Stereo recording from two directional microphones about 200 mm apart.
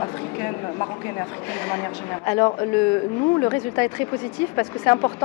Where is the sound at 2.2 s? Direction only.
15° left (ahead or behind).